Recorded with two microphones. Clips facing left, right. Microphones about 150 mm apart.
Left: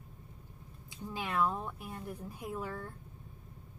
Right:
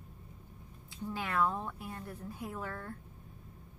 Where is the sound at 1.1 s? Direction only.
15° left (ahead or behind).